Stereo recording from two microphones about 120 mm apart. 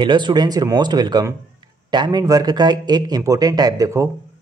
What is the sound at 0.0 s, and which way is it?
A man's voice, 40° right (ahead or behind).